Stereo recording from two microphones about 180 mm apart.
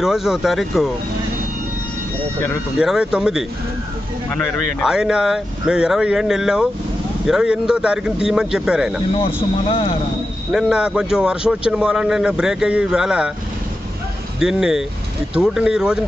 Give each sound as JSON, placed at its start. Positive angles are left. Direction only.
{"t": 0.0, "sound": "a man's voice", "side_deg": 0}
{"t": 2.8, "sound": "a man's voice", "side_deg": -5}
{"t": 4.3, "sound": "speech", "side_deg": 10}
{"t": 4.8, "sound": "a man's voice", "side_deg": -5}
{"t": 9.2, "sound": "speech", "side_deg": 30}
{"t": 10.5, "sound": "a man's voice", "side_deg": -5}
{"t": 14.4, "sound": "a man's voice", "side_deg": -5}